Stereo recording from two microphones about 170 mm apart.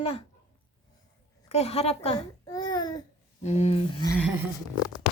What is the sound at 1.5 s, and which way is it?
Speech, 40° left (ahead or behind).